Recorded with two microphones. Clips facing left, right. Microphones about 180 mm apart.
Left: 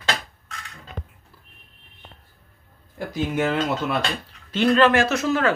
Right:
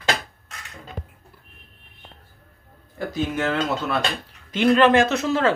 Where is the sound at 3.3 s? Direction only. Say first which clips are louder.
Left 3 dB; 15° left (ahead or behind).